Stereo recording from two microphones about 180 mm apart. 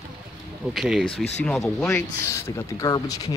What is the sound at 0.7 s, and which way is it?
Speech, centre (ahead or behind).